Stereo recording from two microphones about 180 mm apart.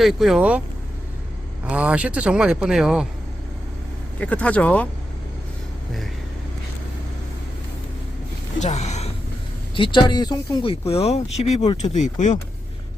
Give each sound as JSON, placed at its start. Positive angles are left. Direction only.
{"t": 0.0, "sound": "a man's voice", "side_deg": 0}
{"t": 1.6, "sound": "a man's voice", "side_deg": -5}
{"t": 4.2, "sound": "speech", "side_deg": 5}
{"t": 8.5, "sound": "speech", "side_deg": 40}
{"t": 9.7, "sound": "speech", "side_deg": 25}